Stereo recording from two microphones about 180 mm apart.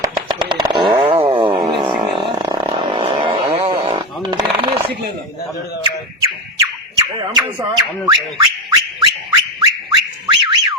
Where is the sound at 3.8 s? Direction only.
30° right (ahead or behind).